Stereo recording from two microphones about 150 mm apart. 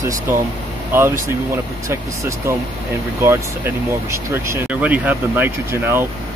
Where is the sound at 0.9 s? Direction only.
15° right (ahead or behind).